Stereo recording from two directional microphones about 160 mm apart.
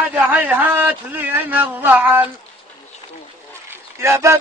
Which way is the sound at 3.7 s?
15° right (ahead or behind).